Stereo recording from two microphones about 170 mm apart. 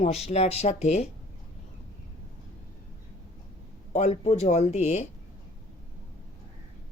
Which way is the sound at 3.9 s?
40° left (ahead or behind).